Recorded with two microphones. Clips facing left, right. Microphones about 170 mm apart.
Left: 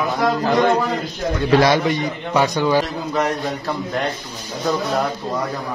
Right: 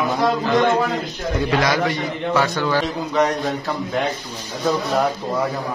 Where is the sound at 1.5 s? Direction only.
30° left (ahead or behind).